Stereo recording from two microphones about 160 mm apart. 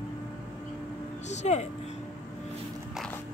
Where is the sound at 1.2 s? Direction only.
45° left (ahead or behind).